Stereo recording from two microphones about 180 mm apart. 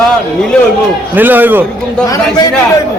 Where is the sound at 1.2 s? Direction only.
10° right (ahead or behind).